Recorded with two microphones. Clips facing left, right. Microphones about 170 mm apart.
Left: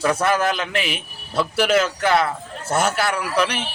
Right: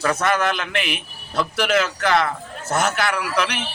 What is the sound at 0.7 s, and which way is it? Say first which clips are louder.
Speech: left 1 dB; centre (ahead or behind).